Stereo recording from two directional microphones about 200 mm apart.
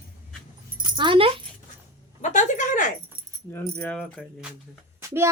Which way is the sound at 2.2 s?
35° left (ahead or behind).